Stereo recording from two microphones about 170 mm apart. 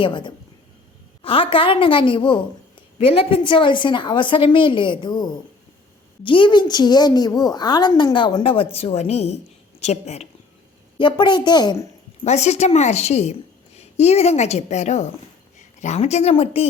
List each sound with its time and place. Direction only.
0.0 s a woman's voice: 25° left (ahead or behind)
10.9 s a woman's voice: 30° left (ahead or behind)
12.2 s a woman's voice: 40° left (ahead or behind)